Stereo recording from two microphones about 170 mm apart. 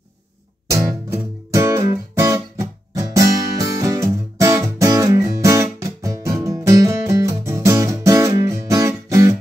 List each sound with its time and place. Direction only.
0.7 s music: 20° right (ahead or behind)